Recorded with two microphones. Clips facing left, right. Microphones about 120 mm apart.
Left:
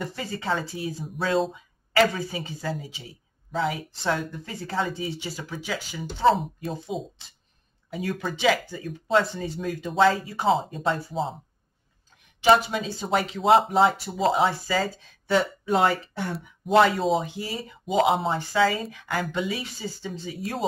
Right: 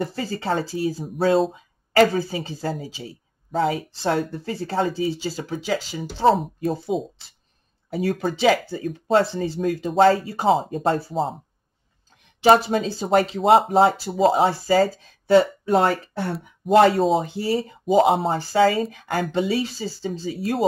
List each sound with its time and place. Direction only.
0.0 s speech: 35° right (ahead or behind)
7.9 s speech: 40° right (ahead or behind)
12.4 s speech: 35° right (ahead or behind)